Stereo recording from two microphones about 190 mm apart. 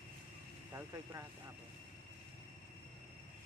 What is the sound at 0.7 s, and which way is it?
Speech, 15° right (ahead or behind).